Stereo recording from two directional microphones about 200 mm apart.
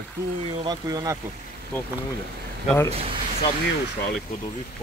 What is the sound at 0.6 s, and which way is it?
Speech, 20° right (ahead or behind).